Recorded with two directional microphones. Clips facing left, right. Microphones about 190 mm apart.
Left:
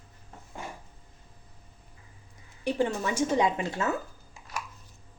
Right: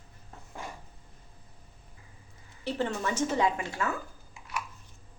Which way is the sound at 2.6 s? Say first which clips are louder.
Left 3 dB; 15° left (ahead or behind).